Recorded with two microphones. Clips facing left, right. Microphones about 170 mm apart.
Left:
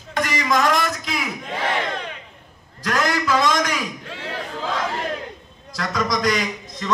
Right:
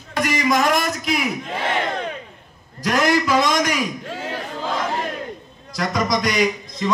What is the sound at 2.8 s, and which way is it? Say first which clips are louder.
A man's voice: right 3 dB; 15° right (ahead or behind).